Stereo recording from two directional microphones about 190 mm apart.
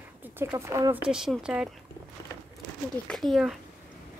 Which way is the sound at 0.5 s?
15° right (ahead or behind).